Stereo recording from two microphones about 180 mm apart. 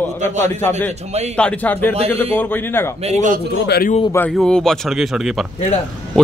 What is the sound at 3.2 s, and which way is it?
Speech, 50° right (ahead or behind).